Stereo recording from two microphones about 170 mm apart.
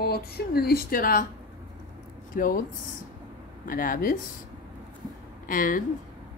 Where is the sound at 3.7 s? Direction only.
55° left (ahead or behind).